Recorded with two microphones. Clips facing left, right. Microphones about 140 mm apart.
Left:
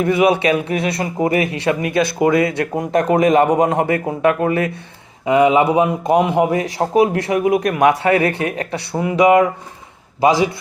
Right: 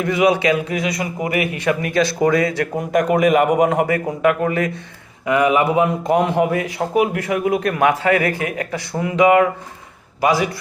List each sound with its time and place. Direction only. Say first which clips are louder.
0.0 s a man's voice: left 2 dB; 25° left (ahead or behind)
7.4 s speech: left 3 dB; 15° left (ahead or behind)
8.9 s speech: left 1 dB; 15° left (ahead or behind)